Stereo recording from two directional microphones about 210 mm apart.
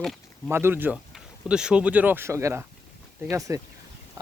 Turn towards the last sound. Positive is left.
turn(degrees=-15)  # may be behind; listen again after turning